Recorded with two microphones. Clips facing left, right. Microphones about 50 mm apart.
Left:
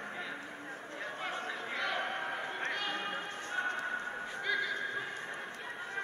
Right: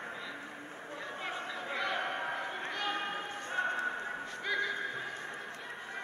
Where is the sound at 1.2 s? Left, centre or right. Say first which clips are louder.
Even; centre.